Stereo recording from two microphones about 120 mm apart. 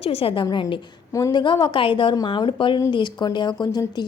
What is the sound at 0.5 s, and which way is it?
A woman's voice, 40° left (ahead or behind).